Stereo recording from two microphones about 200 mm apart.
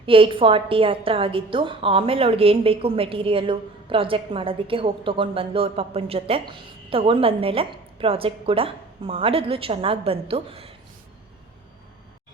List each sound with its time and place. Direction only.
0.0 s a woman's voice: 25° right (ahead or behind)